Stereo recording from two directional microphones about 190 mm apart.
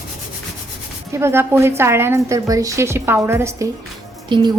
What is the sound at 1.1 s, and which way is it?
A woman's voice, 15° right (ahead or behind).